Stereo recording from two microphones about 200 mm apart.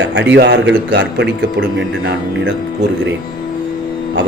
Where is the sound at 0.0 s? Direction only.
65° right (ahead or behind).